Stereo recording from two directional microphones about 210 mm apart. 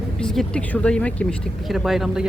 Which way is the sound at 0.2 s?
5° left (ahead or behind).